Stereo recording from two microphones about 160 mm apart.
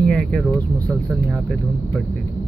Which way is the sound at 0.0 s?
5° left (ahead or behind).